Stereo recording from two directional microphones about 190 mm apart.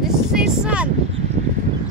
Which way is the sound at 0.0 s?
5° right (ahead or behind).